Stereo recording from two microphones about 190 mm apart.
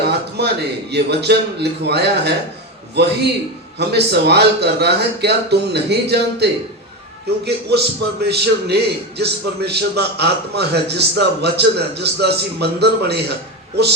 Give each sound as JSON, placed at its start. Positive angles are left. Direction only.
{"t": 0.0, "sound": "a man's voice", "side_deg": -60}